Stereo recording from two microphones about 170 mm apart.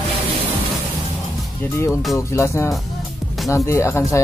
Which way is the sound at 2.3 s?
15° left (ahead or behind).